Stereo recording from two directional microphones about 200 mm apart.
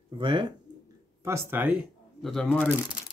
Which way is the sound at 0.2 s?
25° right (ahead or behind).